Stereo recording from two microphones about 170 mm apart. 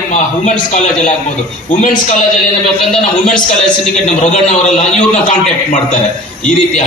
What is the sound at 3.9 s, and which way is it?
A man's voice, 45° left (ahead or behind).